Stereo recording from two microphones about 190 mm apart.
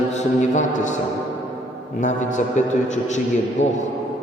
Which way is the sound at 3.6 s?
35° left (ahead or behind).